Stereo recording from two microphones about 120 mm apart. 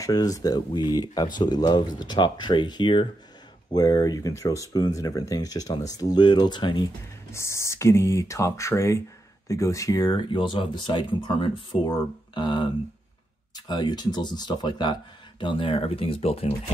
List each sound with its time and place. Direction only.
0.0 s speech: 30° left (ahead or behind)
3.7 s speech: 30° left (ahead or behind)
7.3 s speech: 25° left (ahead or behind); by 12.6 s 40° left (ahead or behind)
13.7 s speech: 35° left (ahead or behind); by 16.5 s 55° left (ahead or behind)